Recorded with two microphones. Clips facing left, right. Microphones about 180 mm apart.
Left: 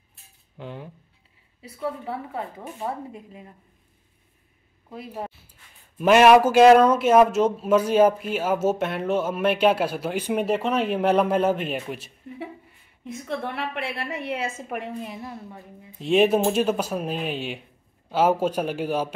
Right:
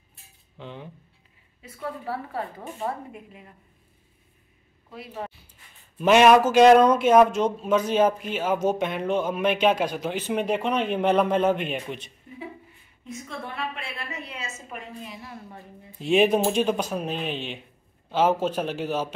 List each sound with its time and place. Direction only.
0.6 s a man's voice: 10° left (ahead or behind)
5.1 s speech: 5° left (ahead or behind)
13.0 s a woman's voice: 65° left (ahead or behind)
16.0 s a man's voice: centre (ahead or behind)